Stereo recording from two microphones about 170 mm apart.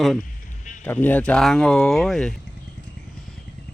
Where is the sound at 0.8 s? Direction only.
10° left (ahead or behind).